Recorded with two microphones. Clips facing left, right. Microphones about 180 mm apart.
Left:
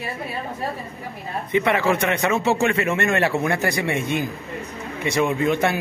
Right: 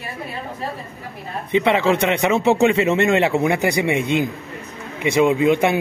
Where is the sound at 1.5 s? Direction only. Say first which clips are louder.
Right 3 dB; 20° right (ahead or behind).